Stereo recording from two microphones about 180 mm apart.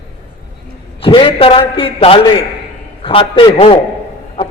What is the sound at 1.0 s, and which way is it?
A man's voice, 30° left (ahead or behind).